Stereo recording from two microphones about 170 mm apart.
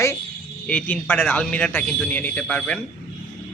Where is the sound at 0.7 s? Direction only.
10° left (ahead or behind).